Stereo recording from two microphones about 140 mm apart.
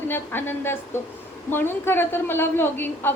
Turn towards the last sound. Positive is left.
turn(degrees=15)  # may be behind; listen again after turning